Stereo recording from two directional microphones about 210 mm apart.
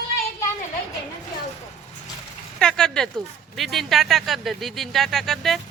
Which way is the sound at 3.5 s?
Centre (ahead or behind).